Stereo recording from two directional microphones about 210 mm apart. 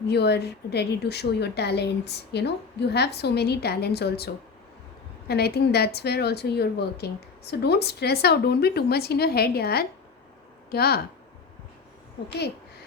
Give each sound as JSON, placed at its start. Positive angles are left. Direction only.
{"t": 0.1, "sound": "a woman's voice", "side_deg": 50}
{"t": 5.3, "sound": "a woman's voice", "side_deg": 50}